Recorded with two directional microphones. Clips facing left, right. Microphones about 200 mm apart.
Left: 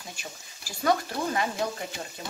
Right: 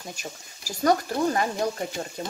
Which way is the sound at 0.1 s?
40° right (ahead or behind).